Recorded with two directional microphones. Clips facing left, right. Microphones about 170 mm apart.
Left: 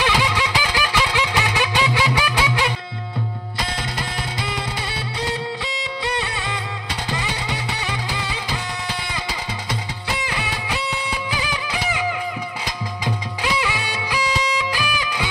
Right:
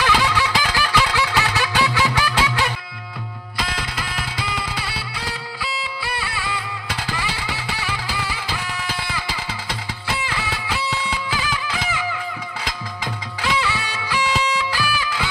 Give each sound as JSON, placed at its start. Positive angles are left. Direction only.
{"t": 0.0, "sound": "a sound", "side_deg": 15}
{"t": 6.0, "sound": "music", "side_deg": 20}
{"t": 7.8, "sound": "music", "side_deg": 20}
{"t": 10.2, "sound": "music", "side_deg": 15}